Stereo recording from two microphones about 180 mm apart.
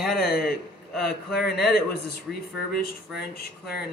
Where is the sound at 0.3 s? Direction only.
55° left (ahead or behind).